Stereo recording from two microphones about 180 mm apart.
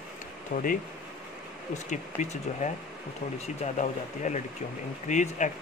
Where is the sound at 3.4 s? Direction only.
40° left (ahead or behind).